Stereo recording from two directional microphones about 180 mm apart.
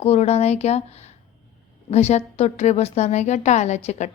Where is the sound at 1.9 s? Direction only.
35° left (ahead or behind).